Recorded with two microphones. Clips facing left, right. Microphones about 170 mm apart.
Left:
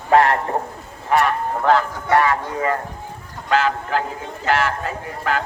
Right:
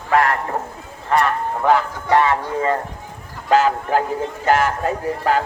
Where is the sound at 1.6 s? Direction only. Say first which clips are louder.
Even; 15° right (ahead or behind).